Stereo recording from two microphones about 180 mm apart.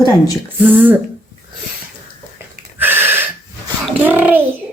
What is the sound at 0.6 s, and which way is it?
Speech, 10° right (ahead or behind).